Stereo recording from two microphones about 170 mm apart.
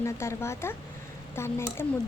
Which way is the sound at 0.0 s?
15° left (ahead or behind).